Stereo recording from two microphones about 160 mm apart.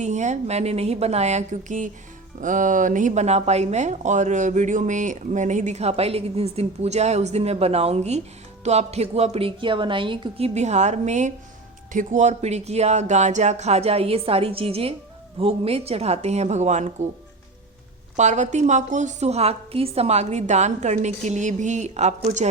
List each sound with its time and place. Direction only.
0.0 s a woman's voice: 45° right (ahead or behind)
18.2 s speech: 45° right (ahead or behind)